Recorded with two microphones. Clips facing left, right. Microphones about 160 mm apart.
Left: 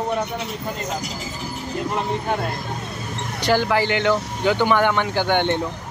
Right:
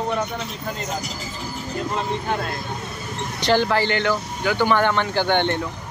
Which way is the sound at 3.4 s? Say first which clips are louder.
Even; 10° left (ahead or behind).